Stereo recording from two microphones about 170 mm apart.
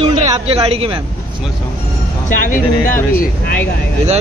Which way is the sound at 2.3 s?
50° left (ahead or behind).